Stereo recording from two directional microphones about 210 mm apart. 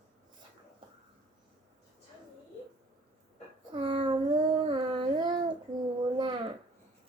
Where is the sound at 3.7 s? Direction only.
25° right (ahead or behind).